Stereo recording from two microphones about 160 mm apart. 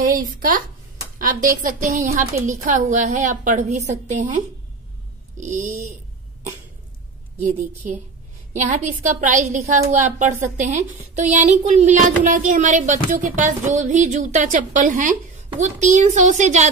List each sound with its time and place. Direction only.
0.0 s speech: 60° right (ahead or behind)
5.4 s speech: 50° right (ahead or behind)
9.2 s speech: 50° right (ahead or behind)